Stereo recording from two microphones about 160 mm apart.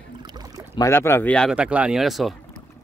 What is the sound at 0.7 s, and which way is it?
Speech, 15° left (ahead or behind).